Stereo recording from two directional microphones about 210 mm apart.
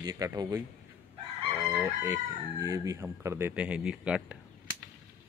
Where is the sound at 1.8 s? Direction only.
15° right (ahead or behind).